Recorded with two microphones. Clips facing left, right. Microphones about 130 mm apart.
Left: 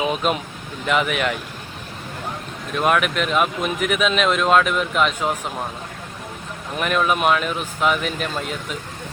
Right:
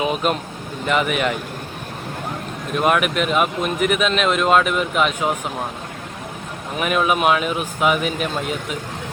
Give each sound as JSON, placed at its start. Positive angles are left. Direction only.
{"t": 0.0, "sound": "speech", "side_deg": 0}
{"t": 2.7, "sound": "speech", "side_deg": -5}
{"t": 6.7, "sound": "speech", "side_deg": -5}